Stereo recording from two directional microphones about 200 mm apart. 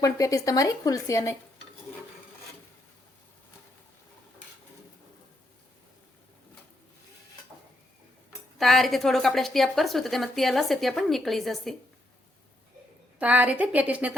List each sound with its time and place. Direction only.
0.0 s speech: 15° left (ahead or behind)
8.5 s a woman's voice: centre (ahead or behind)
13.1 s a woman's voice: 5° right (ahead or behind)